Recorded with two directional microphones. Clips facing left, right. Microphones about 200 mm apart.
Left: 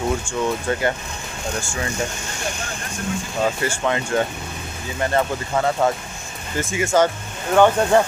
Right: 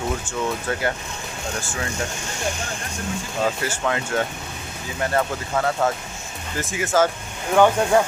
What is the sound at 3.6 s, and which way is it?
Speech, 5° right (ahead or behind).